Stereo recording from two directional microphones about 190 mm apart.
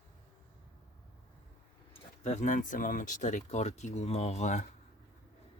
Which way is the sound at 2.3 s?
40° left (ahead or behind).